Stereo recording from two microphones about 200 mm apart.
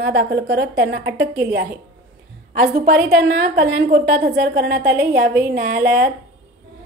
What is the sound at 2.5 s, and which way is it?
A woman's voice, 50° right (ahead or behind).